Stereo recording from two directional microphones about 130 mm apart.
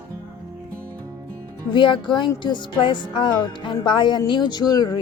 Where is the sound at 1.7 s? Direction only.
40° left (ahead or behind).